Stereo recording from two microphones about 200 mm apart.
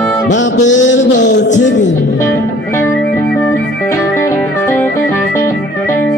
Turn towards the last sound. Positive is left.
turn(degrees=10)  # may be behind; listen again after turning